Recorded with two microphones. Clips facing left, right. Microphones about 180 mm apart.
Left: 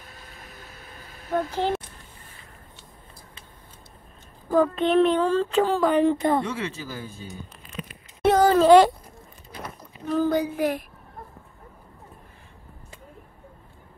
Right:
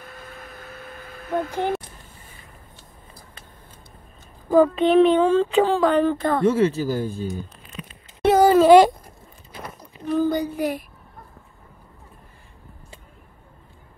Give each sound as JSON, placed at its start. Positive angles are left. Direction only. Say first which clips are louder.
{"t": 0.0, "sound": "a sound", "louder": "right 6 dB", "side_deg": -55}
{"t": 1.5, "sound": "speech", "louder": "right 2 dB", "side_deg": -15}
{"t": 4.6, "sound": "speech", "louder": "right 4 dB", "side_deg": 0}
{"t": 6.0, "sound": "a woman's voice", "louder": "even", "side_deg": 20}
{"t": 6.5, "sound": "speech", "louder": "right 12 dB", "side_deg": -40}
{"t": 8.2, "sound": "a sound", "louder": "right 3 dB", "side_deg": -5}
{"t": 10.0, "sound": "speech", "louder": "right 1 dB", "side_deg": 0}